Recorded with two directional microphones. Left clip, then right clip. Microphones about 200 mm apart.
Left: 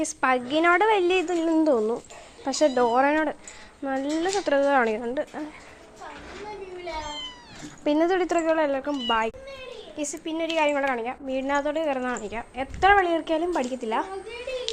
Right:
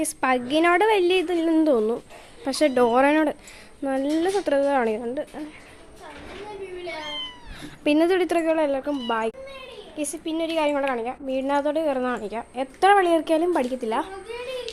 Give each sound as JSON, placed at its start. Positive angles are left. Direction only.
{"t": 0.0, "sound": "a woman's voice", "side_deg": -15}
{"t": 7.0, "sound": "cat", "side_deg": -35}
{"t": 7.6, "sound": "a woman's voice", "side_deg": -20}